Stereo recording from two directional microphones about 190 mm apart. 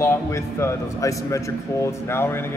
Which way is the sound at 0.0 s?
15° left (ahead or behind).